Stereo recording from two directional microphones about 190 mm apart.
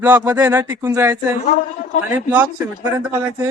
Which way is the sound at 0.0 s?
10° right (ahead or behind).